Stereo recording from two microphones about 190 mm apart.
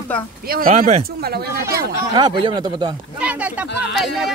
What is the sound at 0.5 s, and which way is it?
Speech, 45° right (ahead or behind).